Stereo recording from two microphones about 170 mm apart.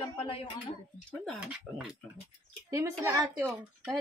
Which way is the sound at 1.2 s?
Centre (ahead or behind).